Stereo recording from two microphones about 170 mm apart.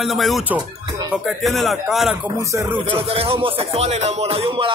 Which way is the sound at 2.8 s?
35° right (ahead or behind).